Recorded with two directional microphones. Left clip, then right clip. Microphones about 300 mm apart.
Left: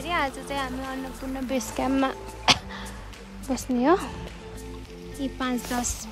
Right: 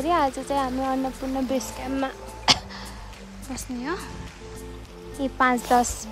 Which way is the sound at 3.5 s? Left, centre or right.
Centre.